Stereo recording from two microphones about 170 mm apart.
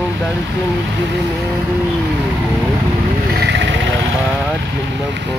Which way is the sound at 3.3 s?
85° right.